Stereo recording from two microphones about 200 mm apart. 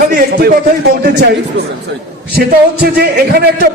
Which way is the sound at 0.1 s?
50° right (ahead or behind).